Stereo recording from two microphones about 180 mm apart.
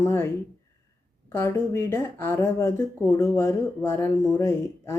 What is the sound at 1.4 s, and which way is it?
Speech, 15° left (ahead or behind).